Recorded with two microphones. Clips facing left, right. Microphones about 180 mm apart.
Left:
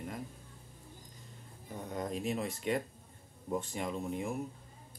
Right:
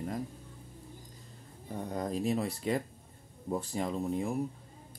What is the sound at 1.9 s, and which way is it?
Speech, 35° right (ahead or behind).